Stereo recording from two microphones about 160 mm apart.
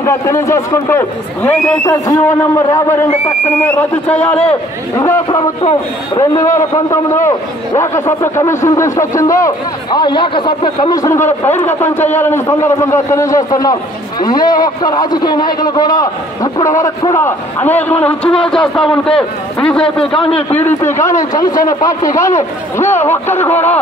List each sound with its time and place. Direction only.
0.0 s a man's voice: 15° left (ahead or behind)
4.9 s a man's voice: 20° left (ahead or behind)